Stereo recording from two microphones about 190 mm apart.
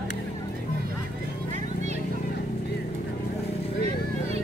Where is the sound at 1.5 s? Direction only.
35° right (ahead or behind).